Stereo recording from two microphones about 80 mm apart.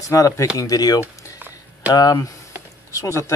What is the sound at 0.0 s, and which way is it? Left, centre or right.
Speech, left.